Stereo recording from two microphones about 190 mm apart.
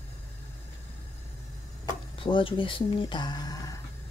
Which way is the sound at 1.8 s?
25° left (ahead or behind).